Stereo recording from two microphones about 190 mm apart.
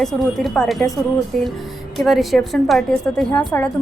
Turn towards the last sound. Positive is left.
turn(degrees=10)  # may be behind; listen again after turning